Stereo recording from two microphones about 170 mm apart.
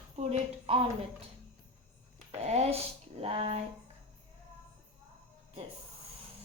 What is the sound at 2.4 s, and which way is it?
A woman's voice, 40° right (ahead or behind).